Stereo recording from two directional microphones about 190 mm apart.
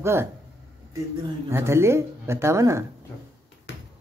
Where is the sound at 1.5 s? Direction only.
15° right (ahead or behind).